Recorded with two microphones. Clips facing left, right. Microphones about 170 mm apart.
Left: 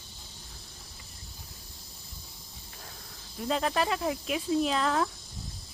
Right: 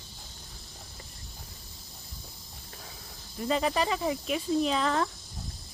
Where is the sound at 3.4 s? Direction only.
Centre (ahead or behind).